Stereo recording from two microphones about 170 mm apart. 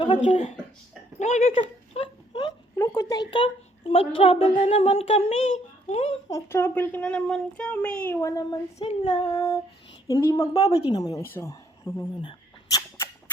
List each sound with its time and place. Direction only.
0.1 s child singing: 40° left (ahead or behind)
1.9 s a sound: 30° left (ahead or behind)
2.7 s a woman's voice: 20° left (ahead or behind)
4.2 s child singing: 35° left (ahead or behind)
6.3 s a child's voice: 15° left (ahead or behind)
8.8 s female singing: 30° left (ahead or behind)
10.1 s a child's voice: 15° left (ahead or behind)
10.4 s child singing: 35° left (ahead or behind)
10.8 s a woman's voice: 25° left (ahead or behind)
12.2 s a sound: 30° left (ahead or behind)